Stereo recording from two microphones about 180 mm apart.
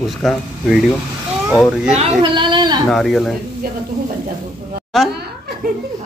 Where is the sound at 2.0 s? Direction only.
25° right (ahead or behind).